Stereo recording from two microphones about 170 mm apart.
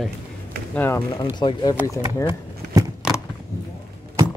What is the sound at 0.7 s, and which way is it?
Speech, 15° left (ahead or behind).